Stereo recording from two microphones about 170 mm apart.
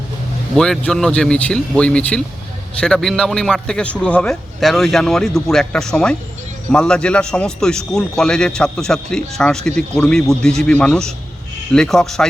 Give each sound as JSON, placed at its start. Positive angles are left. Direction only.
{"t": 0.5, "sound": "a man's voice", "side_deg": 5}